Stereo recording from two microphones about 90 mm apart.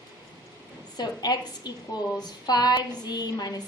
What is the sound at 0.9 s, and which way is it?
A woman's voice, 50° left (ahead or behind).